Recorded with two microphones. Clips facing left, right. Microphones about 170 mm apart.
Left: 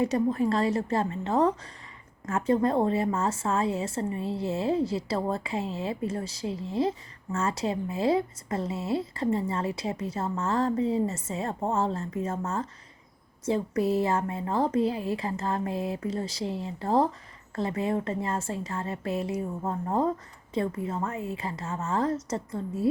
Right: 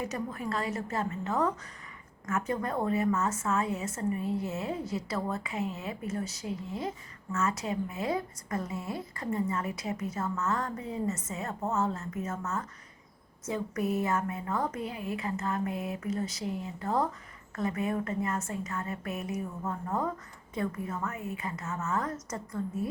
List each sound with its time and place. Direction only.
0.0 s a woman's voice: 30° left (ahead or behind)